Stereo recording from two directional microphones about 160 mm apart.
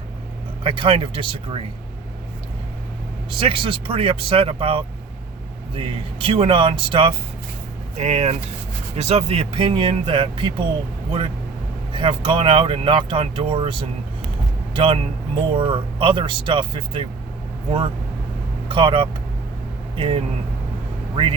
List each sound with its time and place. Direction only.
0.6 s speech: 30° right (ahead or behind)
3.2 s speech: 35° right (ahead or behind)
7.9 s speech: 45° right (ahead or behind)
11.9 s speech: 30° right (ahead or behind)